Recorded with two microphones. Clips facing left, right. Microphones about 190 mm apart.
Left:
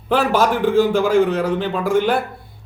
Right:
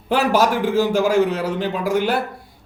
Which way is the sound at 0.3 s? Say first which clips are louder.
Left 3 dB; 10° right (ahead or behind).